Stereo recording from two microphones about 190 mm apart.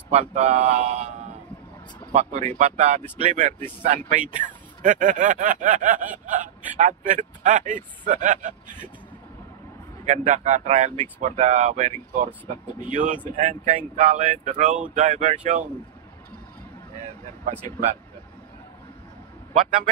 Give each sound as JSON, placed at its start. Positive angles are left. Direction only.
{"t": 0.1, "sound": "speech", "side_deg": -35}
{"t": 2.1, "sound": "speech", "side_deg": -35}
{"t": 4.8, "sound": "a sound", "side_deg": -45}
{"t": 10.0, "sound": "speech", "side_deg": -35}
{"t": 17.6, "sound": "speech", "side_deg": -40}